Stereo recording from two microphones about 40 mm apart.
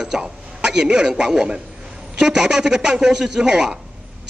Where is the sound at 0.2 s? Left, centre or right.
Centre.